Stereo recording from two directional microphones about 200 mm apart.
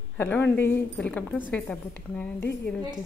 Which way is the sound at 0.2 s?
10° left (ahead or behind).